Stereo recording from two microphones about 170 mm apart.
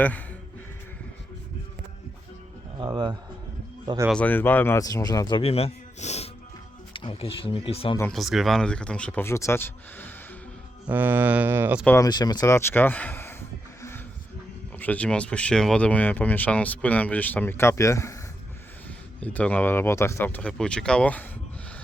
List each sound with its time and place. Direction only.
0.0 s speech: 10° left (ahead or behind)
2.7 s speech: 25° right (ahead or behind)
4.1 s speech: 10° left (ahead or behind)
5.4 s speech: 35° left (ahead or behind)
8.1 s speech: centre (ahead or behind)
10.8 s speech: 10° right (ahead or behind)
11.9 s speech: 20° left (ahead or behind)
14.8 s speech: 10° left (ahead or behind)